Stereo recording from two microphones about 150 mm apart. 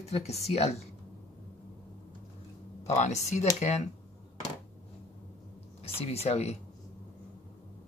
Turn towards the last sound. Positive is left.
turn(degrees=45)  # may be behind; listen again after turning